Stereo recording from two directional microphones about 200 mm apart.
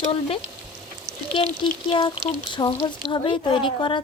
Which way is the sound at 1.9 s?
25° left (ahead or behind).